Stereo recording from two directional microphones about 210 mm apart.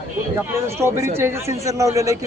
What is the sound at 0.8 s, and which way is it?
A man's voice, 10° right (ahead or behind).